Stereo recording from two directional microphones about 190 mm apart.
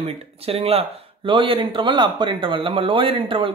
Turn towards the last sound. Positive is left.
turn(degrees=-25)  # may be behind; listen again after turning